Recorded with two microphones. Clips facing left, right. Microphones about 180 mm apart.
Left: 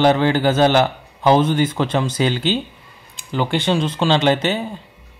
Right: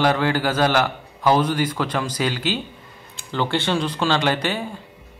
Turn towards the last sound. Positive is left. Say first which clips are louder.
# left 5 dB
turn(degrees=20)  # may be behind; listen again after turning